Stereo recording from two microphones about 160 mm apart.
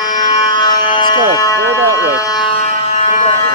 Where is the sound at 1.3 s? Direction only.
20° left (ahead or behind).